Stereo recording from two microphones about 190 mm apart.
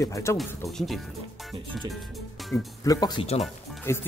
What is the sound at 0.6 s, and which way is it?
Speech, centre (ahead or behind).